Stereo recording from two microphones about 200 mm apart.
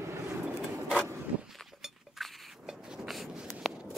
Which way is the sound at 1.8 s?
Centre (ahead or behind).